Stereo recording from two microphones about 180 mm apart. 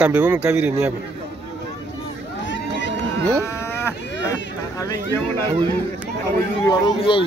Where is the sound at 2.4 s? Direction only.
85° left.